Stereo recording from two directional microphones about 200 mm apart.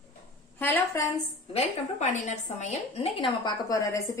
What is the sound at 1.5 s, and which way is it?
A woman's voice, 35° left (ahead or behind).